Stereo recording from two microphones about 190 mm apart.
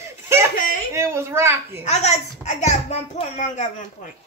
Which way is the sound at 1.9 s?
35° left (ahead or behind).